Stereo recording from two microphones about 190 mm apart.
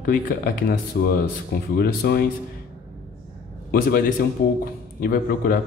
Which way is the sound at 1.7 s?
55° left (ahead or behind).